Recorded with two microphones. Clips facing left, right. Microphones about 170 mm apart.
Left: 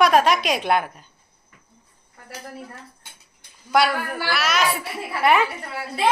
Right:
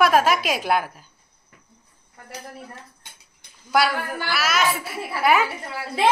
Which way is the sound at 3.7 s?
Centre (ahead or behind).